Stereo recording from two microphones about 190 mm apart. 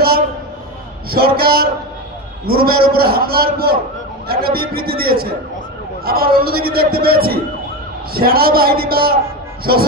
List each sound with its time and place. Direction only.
1.1 s a man's voice: 55° right (ahead or behind)